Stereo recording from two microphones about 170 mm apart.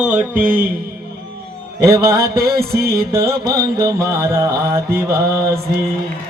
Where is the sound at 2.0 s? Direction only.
65° right (ahead or behind).